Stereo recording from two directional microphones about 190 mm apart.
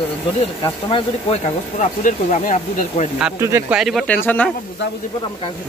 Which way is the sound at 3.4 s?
15° right (ahead or behind).